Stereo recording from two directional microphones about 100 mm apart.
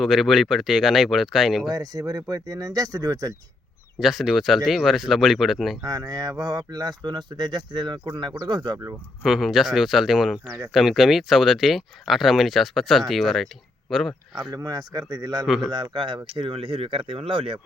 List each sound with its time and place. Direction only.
0.0 s speech: centre (ahead or behind)
1.7 s speech: 40° right (ahead or behind)
4.0 s speech: centre (ahead or behind)
5.8 s speech: 35° right (ahead or behind)
9.2 s speech: 5° right (ahead or behind)
14.5 s speech: 40° right (ahead or behind)
15.4 s speech: centre (ahead or behind)
15.7 s speech: 50° right (ahead or behind)